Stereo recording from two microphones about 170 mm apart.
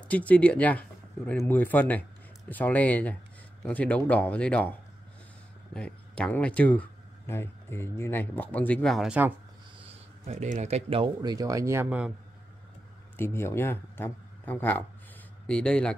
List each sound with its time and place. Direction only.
0.1 s speech: 10° left (ahead or behind)
9.8 s speech: 35° right (ahead or behind)
11.3 s speech: 20° right (ahead or behind)
13.2 s a man's voice: 15° left (ahead or behind)